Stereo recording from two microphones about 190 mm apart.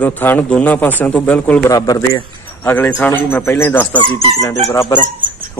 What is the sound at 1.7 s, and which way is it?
Speech, 20° left (ahead or behind).